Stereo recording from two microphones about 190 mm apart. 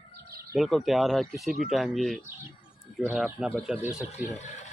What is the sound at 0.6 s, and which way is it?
Speech, centre (ahead or behind).